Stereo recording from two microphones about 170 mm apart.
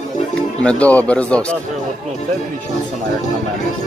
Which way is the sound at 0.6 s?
5° left (ahead or behind).